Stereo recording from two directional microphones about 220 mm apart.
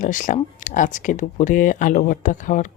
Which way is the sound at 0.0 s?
35° left (ahead or behind).